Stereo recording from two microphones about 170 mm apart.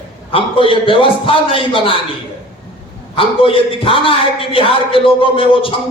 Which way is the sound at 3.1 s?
30° left (ahead or behind).